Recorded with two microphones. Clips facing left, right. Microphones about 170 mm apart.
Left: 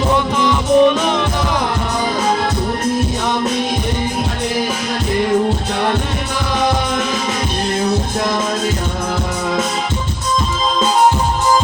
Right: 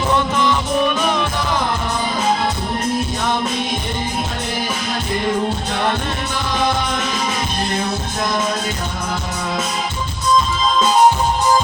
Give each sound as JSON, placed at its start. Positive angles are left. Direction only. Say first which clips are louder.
{"t": 0.4, "sound": "music", "louder": "left 6 dB", "side_deg": 20}